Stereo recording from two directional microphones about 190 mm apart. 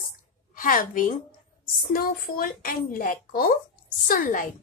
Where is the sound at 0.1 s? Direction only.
45° left (ahead or behind).